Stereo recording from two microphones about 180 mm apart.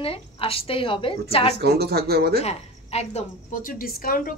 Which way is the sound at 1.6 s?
60° right (ahead or behind).